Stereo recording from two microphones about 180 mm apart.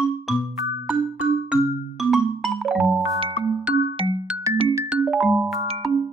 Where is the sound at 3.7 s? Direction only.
25° right (ahead or behind).